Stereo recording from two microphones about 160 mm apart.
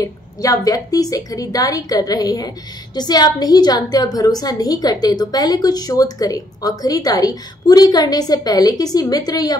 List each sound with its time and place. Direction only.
0.0 s a woman's voice: 20° left (ahead or behind)